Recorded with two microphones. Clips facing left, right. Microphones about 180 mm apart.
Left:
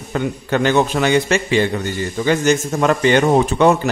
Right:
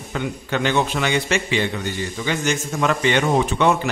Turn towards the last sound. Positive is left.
turn(degrees=40)  # may be behind; listen again after turning